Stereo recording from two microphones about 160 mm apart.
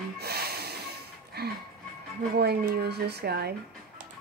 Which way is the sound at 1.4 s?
85° right.